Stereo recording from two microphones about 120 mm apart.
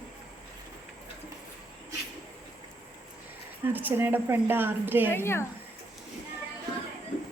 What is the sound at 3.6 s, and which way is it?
A woman's voice, 15° right (ahead or behind).